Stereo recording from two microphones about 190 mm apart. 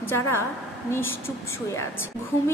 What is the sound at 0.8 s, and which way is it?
Speech, 10° left (ahead or behind).